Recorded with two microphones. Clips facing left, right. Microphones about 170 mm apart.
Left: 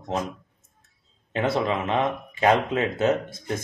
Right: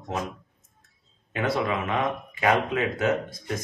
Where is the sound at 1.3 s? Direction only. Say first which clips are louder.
Left 2 dB; 25° left (ahead or behind).